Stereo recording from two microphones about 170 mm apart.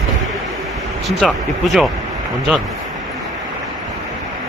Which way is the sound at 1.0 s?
Centre (ahead or behind).